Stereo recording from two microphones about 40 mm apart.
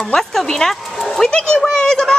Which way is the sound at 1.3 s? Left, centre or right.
Left.